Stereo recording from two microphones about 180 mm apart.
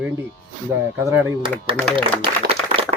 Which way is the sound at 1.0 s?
15° right (ahead or behind).